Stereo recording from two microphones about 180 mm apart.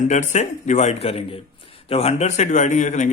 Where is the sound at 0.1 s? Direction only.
40° left (ahead or behind).